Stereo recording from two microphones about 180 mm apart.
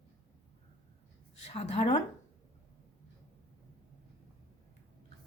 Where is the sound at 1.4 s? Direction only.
35° left (ahead or behind).